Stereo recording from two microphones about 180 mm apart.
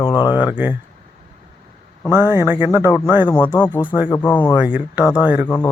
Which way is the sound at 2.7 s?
15° left (ahead or behind).